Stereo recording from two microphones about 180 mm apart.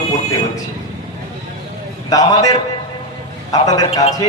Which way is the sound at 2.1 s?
20° left (ahead or behind).